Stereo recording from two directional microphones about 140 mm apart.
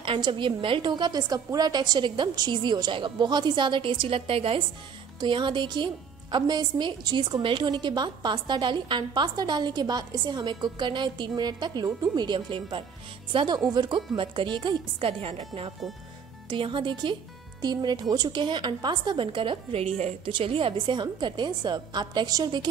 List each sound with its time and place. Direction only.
0.0 s a woman's voice: 35° right (ahead or behind)